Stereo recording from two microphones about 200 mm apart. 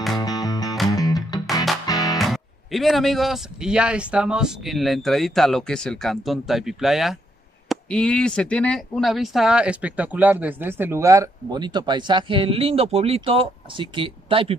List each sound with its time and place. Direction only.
0.2 s music: 20° left (ahead or behind)
2.1 s speech: centre (ahead or behind); by 14.6 s 25° right (ahead or behind)